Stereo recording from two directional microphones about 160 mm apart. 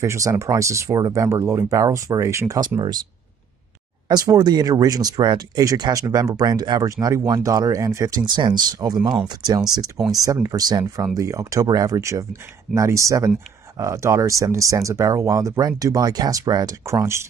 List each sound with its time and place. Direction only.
0.0 s speech: 20° right (ahead or behind)
4.1 s speech: 25° right (ahead or behind)